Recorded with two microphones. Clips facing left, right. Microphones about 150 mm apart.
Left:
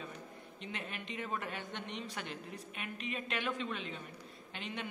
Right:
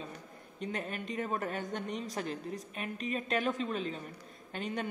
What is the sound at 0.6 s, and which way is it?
A woman's voice, 40° right (ahead or behind).